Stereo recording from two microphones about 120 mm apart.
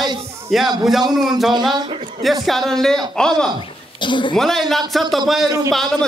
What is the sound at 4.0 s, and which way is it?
Speech, 40° left (ahead or behind).